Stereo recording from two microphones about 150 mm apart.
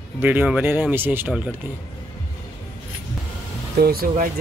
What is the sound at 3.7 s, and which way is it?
Speech, 90° right.